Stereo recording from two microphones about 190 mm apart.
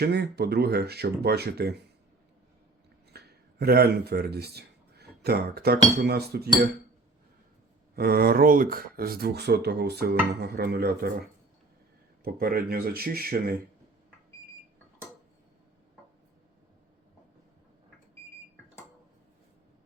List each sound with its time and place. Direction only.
0.0 s speech: 60° right (ahead or behind)
3.1 s a sound: 55° right (ahead or behind)
6.0 s speech: 55° right (ahead or behind)
7.9 s speech: 55° right (ahead or behind)